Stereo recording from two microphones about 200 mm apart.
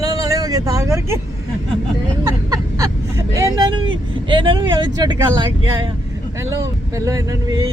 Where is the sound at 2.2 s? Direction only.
15° right (ahead or behind).